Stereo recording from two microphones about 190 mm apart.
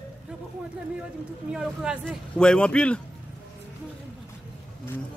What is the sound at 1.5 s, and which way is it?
Speech, 5° right (ahead or behind).